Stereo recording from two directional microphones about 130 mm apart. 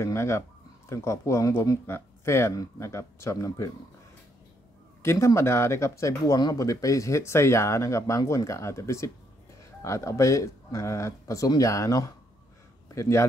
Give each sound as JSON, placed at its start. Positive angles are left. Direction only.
{"t": 0.0, "sound": "speech", "side_deg": 20}
{"t": 5.0, "sound": "speech", "side_deg": 20}